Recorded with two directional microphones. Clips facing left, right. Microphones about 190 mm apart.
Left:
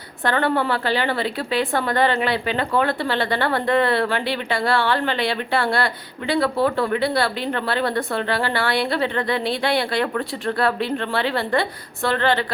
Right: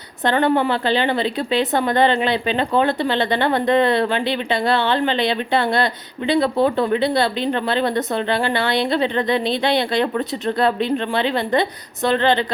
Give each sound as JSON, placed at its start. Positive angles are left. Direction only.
{"t": 0.3, "sound": "a woman's voice", "side_deg": -20}